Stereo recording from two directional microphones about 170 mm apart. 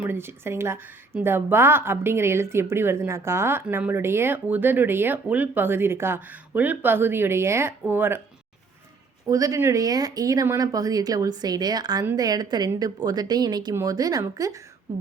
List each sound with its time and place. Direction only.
0.0 s a woman's voice: 15° right (ahead or behind)
9.2 s speech: 20° right (ahead or behind)